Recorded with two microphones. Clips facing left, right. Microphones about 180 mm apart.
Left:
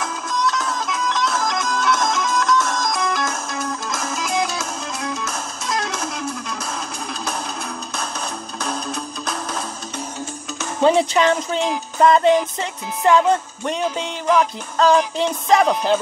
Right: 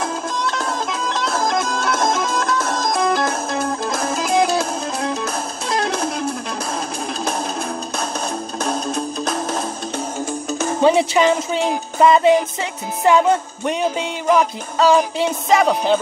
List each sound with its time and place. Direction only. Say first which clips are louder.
1.4 s music: right 4 dB; 30° right (ahead or behind)
1.7 s music: right 1 dB; 50° right (ahead or behind)
3.0 s music: right 5 dB; 30° right (ahead or behind)
4.2 s music: right 6 dB; 55° right (ahead or behind)
4.6 s music: right 6 dB; 30° right (ahead or behind)
8.6 s music: right 4 dB; 50° right (ahead or behind)
10.8 s speech: right 1 dB; 5° right (ahead or behind)
12.0 s music: right 1 dB; 10° right (ahead or behind)